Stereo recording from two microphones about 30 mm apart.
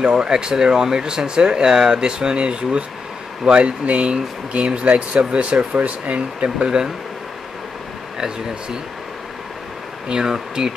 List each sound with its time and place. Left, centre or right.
0.1 s speech: right
6.4 s speech: right
10.0 s speech: right